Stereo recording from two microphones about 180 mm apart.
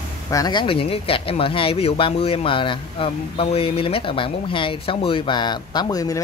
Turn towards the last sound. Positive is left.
turn(degrees=20)  # may be behind; listen again after turning